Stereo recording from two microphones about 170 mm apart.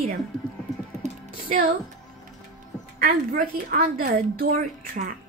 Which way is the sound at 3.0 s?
55° right (ahead or behind).